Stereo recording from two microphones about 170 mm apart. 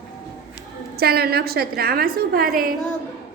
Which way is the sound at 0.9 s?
65° right (ahead or behind).